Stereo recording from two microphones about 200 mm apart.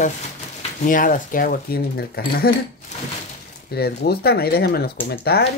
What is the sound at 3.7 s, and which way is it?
Speech, 50° left (ahead or behind).